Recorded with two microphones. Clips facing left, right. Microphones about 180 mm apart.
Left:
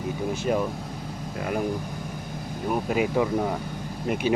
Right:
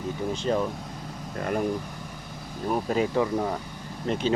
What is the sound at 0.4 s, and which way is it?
Speech, 10° left (ahead or behind).